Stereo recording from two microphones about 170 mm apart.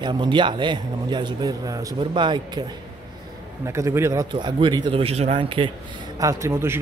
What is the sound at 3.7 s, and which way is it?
Speech, 15° right (ahead or behind).